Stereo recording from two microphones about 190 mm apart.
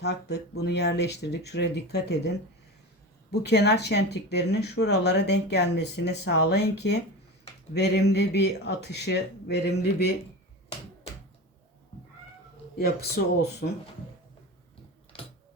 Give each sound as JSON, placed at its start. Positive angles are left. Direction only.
{"t": 0.0, "sound": "speech", "side_deg": 60}
{"t": 3.4, "sound": "speech", "side_deg": 60}
{"t": 12.7, "sound": "speech", "side_deg": 55}